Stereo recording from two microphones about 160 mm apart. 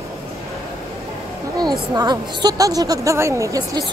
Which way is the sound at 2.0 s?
25° right (ahead or behind).